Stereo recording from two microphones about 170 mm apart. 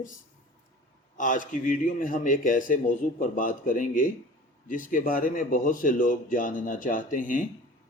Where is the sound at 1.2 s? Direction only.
50° left (ahead or behind).